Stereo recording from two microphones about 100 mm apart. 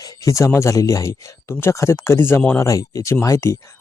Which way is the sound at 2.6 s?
35° left (ahead or behind).